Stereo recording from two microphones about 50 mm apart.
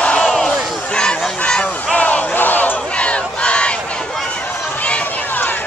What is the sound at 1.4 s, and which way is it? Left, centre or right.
Honk, centre.